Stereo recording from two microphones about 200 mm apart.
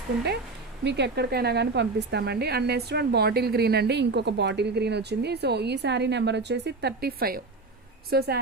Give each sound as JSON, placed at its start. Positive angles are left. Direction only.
{"t": 0.9, "sound": "a woman's voice", "side_deg": -60}